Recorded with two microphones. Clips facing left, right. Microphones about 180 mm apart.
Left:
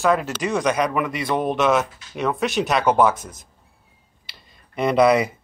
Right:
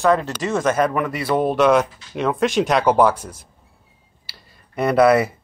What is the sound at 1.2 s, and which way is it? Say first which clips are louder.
Speech: right 5 dB; 10° right (ahead or behind).